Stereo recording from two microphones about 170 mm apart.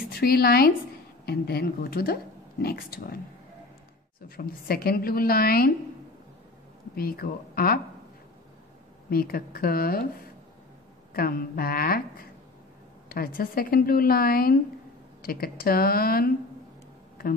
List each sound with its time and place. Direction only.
0.1 s a woman's voice: 65° left (ahead or behind)
4.4 s a woman's voice: 65° left (ahead or behind)
7.0 s a woman's voice: 60° left (ahead or behind)
9.1 s a woman's voice: 60° left (ahead or behind)
11.1 s a woman's voice: 60° left (ahead or behind)
13.1 s a woman's voice: 60° left (ahead or behind)